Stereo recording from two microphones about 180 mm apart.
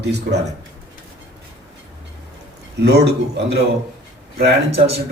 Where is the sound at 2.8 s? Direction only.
70° right (ahead or behind).